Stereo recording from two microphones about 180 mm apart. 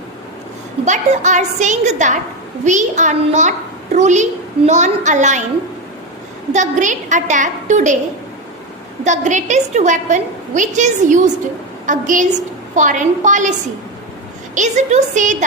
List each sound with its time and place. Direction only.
0.9 s a child's voice: 40° right (ahead or behind)
6.5 s a woman's voice: 40° right (ahead or behind)
9.0 s a woman's voice: 40° right (ahead or behind)